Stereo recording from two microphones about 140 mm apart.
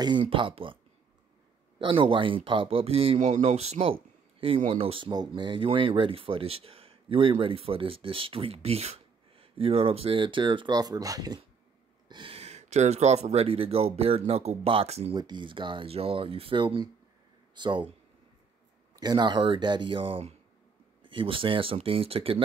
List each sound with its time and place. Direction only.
0.0 s speech: 35° right (ahead or behind)
1.8 s speech: 40° right (ahead or behind)
12.1 s speech: 40° right (ahead or behind)
15.1 s speech: 35° right (ahead or behind)
18.9 s speech: 30° right (ahead or behind)